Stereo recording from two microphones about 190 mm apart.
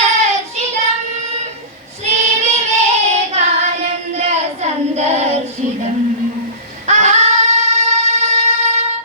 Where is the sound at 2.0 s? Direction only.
35° right (ahead or behind).